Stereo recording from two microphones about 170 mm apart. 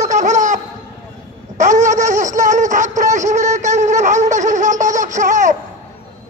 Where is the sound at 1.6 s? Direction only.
45° right (ahead or behind).